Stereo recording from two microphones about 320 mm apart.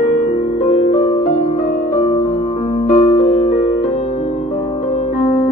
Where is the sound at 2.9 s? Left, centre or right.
Centre.